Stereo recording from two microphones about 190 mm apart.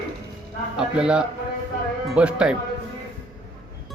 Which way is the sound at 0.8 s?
5° right (ahead or behind).